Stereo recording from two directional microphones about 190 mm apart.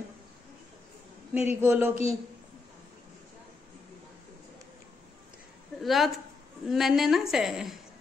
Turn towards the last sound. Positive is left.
turn(degrees=0)  # may be behind; listen again after turning